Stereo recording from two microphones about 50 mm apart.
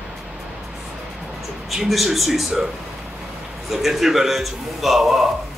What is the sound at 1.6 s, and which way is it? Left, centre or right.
Speech, centre.